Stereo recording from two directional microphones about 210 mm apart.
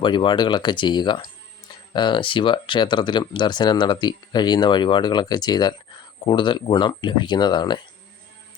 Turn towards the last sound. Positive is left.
turn(degrees=20)  # may be behind; listen again after turning